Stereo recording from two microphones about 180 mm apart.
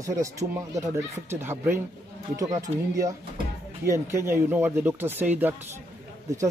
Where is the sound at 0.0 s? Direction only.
20° right (ahead or behind).